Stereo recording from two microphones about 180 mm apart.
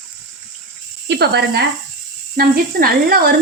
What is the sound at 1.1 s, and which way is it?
Speech, 65° right (ahead or behind).